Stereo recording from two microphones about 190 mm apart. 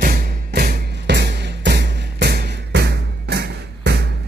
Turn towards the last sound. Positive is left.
turn(degrees=-60)  # may be behind; listen again after turning